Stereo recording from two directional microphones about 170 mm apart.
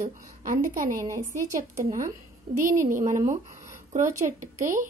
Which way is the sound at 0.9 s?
20° right (ahead or behind).